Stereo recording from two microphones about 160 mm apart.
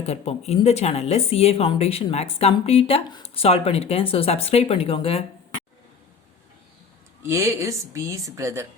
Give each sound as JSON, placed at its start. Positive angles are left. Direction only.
{"t": 0.0, "sound": "speech", "side_deg": 40}
{"t": 7.2, "sound": "speech", "side_deg": -15}